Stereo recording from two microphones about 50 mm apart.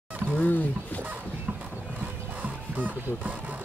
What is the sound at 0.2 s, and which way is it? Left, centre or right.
Fowl, right.